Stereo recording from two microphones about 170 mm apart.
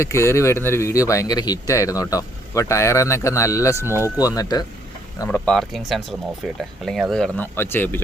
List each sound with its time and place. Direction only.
0.0 s speech: 15° left (ahead or behind)
5.5 s speech: centre (ahead or behind)